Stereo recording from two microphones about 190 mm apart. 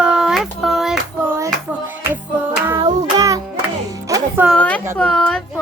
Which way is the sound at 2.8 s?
20° right (ahead or behind).